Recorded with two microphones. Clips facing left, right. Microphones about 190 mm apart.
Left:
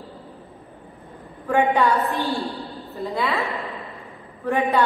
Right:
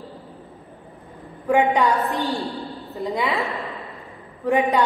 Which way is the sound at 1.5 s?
15° right (ahead or behind).